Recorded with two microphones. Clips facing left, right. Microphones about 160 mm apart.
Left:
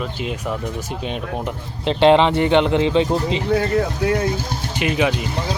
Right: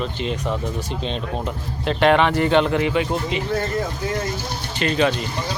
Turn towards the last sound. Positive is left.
turn(degrees=10)  # may be behind; listen again after turning